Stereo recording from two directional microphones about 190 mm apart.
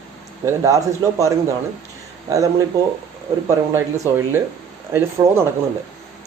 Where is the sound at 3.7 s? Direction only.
15° right (ahead or behind).